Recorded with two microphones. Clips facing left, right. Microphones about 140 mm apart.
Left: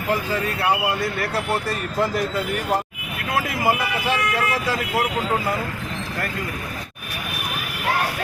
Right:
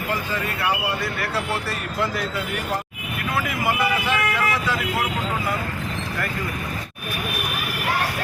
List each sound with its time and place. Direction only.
3.3 s speech: 35° left (ahead or behind)